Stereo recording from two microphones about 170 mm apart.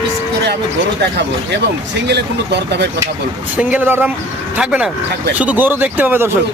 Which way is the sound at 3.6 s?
10° right (ahead or behind).